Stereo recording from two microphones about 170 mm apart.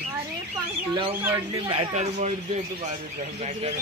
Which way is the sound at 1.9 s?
45° right (ahead or behind).